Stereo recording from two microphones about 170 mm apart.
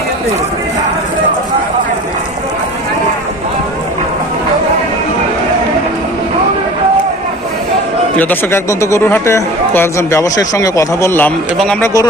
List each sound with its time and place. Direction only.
8.2 s speech: 10° left (ahead or behind)
11.5 s speech: 5° left (ahead or behind)